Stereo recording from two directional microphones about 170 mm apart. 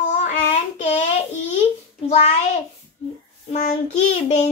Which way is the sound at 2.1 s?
40° left (ahead or behind).